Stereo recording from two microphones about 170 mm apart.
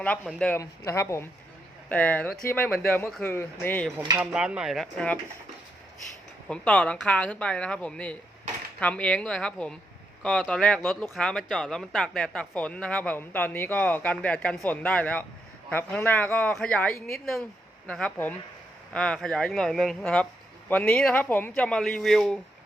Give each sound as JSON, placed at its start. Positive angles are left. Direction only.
{"t": 0.0, "sound": "speech", "side_deg": 5}
{"t": 4.2, "sound": "speech", "side_deg": -5}
{"t": 6.5, "sound": "speech", "side_deg": 5}